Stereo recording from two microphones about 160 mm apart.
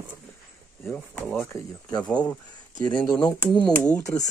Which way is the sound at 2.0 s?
5° left (ahead or behind).